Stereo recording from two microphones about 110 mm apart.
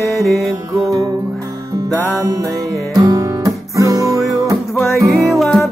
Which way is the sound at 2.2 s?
30° right (ahead or behind).